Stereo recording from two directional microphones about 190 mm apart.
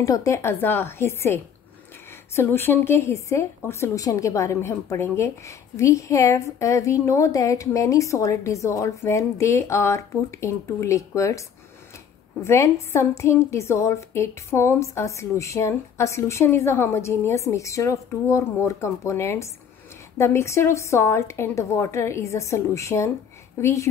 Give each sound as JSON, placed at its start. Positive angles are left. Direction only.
{"t": 0.0, "sound": "a woman's voice", "side_deg": 15}